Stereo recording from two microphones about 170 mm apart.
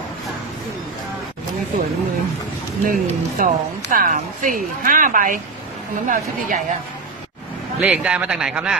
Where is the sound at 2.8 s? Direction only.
55° right (ahead or behind).